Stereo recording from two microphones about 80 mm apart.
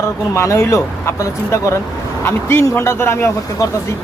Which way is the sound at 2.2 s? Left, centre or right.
Left.